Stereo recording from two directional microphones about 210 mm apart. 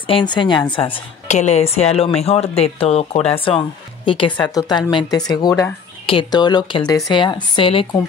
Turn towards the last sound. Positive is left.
turn(degrees=25)  # may be behind; listen again after turning